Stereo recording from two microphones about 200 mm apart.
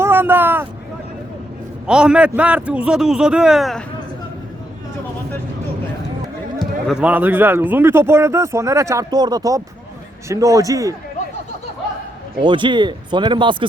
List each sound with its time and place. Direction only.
0.0 s vehicle: 10° right (ahead or behind)
1.9 s a man's voice: 5° right (ahead or behind)
6.6 s a man's voice: centre (ahead or behind)
12.4 s speech: 25° right (ahead or behind)